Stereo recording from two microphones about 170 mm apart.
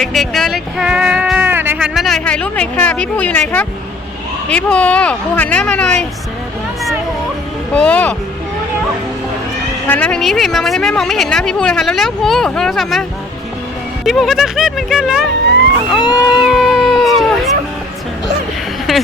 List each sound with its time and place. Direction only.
0.0 s speech: centre (ahead or behind)
7.7 s speech: 5° left (ahead or behind)
9.8 s speech: 10° left (ahead or behind)
18.9 s a sound: centre (ahead or behind)